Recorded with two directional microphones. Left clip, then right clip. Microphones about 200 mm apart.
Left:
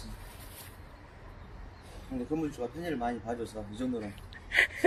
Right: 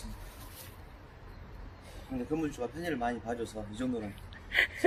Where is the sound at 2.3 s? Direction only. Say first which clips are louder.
Even; 10° left (ahead or behind).